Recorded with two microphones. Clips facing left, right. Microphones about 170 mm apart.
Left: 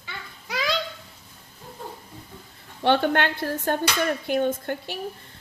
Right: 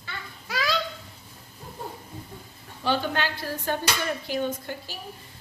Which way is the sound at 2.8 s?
65° left (ahead or behind).